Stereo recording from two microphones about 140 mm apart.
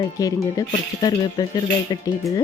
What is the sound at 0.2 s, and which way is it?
Speech, 25° left (ahead or behind).